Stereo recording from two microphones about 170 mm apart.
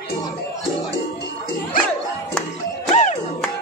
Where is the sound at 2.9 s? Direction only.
40° left (ahead or behind).